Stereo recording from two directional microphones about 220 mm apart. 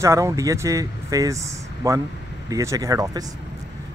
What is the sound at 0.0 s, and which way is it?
Speech, 15° right (ahead or behind).